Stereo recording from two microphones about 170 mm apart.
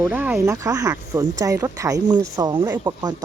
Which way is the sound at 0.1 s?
10° right (ahead or behind).